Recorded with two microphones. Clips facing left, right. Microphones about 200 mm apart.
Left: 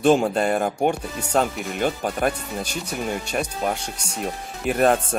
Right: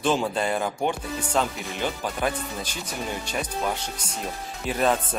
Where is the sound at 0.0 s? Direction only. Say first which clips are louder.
Left 6 dB; 45° left (ahead or behind).